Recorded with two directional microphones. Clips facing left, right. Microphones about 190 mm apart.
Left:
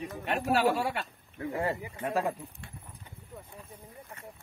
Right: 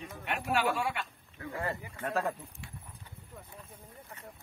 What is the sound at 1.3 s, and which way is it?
Speech, 20° left (ahead or behind).